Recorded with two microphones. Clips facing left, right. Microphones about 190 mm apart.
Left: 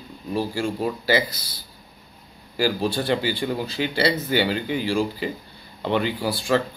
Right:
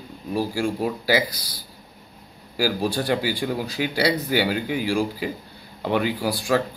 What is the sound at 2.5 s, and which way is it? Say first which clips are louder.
A man's voice: even; 10° right (ahead or behind).